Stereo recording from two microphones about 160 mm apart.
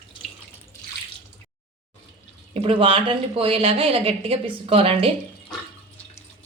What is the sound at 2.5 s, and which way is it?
A woman's voice, 35° right (ahead or behind).